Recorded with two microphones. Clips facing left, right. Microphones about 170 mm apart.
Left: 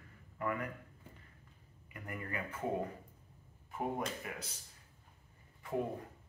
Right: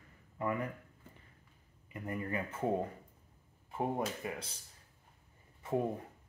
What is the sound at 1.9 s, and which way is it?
Speech, 25° right (ahead or behind).